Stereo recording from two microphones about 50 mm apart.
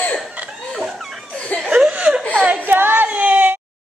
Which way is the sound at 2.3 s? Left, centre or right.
Right.